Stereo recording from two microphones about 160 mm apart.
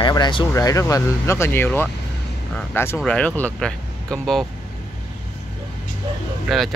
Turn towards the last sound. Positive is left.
turn(degrees=0)  # may be behind; listen again after turning